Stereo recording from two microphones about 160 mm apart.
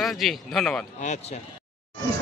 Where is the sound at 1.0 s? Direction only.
45° left (ahead or behind).